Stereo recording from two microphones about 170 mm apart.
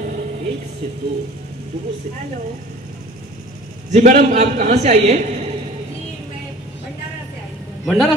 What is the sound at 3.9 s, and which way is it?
A man's voice, 45° right (ahead or behind).